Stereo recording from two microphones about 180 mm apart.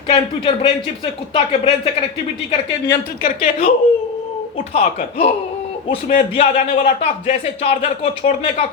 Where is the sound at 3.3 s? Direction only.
35° left (ahead or behind).